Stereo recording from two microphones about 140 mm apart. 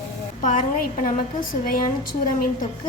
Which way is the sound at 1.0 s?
90° left.